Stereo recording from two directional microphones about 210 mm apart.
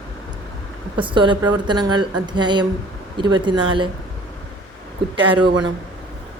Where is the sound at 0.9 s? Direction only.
25° right (ahead or behind).